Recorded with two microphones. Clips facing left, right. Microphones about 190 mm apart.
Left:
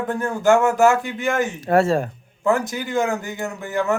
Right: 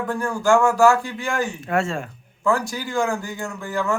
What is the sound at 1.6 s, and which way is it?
Speech, 35° left (ahead or behind).